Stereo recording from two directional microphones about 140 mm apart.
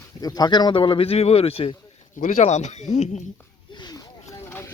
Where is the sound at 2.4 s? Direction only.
55° left (ahead or behind).